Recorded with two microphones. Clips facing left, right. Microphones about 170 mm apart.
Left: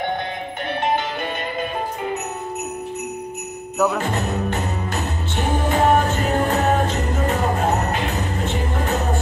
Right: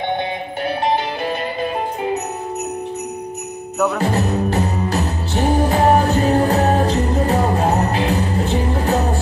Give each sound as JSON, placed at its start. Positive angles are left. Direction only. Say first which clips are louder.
{"t": 4.0, "sound": "music", "louder": "right 5 dB", "side_deg": -35}